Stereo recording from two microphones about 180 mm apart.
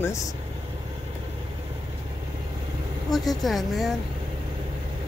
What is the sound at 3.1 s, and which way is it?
Speech, centre (ahead or behind).